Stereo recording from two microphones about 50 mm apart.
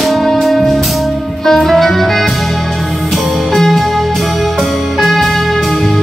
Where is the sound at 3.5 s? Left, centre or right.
Centre.